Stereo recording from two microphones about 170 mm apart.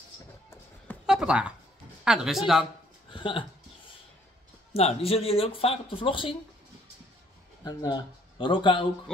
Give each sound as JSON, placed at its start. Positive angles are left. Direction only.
{"t": 1.0, "sound": "a sound", "side_deg": -5}
{"t": 2.0, "sound": "speech", "side_deg": 0}
{"t": 3.1, "sound": "speech", "side_deg": 30}
{"t": 4.7, "sound": "speech", "side_deg": 35}
{"t": 7.6, "sound": "speech", "side_deg": 25}